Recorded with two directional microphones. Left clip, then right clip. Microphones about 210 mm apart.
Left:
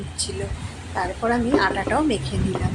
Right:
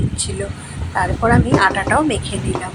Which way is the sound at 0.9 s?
15° right (ahead or behind).